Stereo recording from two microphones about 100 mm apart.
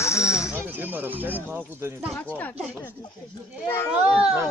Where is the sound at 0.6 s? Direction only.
20° right (ahead or behind).